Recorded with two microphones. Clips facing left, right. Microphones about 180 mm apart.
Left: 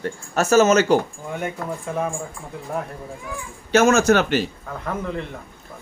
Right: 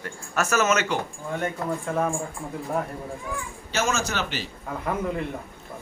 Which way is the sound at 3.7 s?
55° left (ahead or behind).